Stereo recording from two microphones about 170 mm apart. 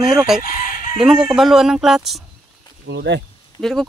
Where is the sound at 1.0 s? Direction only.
5° right (ahead or behind).